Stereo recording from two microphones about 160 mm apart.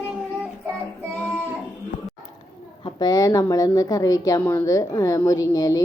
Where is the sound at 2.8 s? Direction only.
25° left (ahead or behind).